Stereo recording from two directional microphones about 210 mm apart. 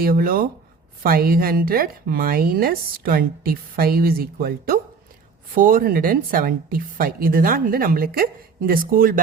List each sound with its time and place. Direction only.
0.0 s speech: 45° right (ahead or behind)